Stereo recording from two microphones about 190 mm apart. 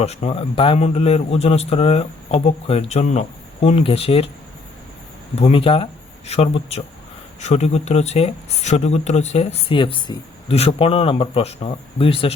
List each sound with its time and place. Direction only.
0.0 s speech: 35° left (ahead or behind)
5.4 s speech: 30° left (ahead or behind)